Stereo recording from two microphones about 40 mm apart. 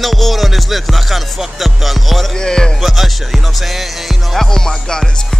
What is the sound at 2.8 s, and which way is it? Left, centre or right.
Music, centre.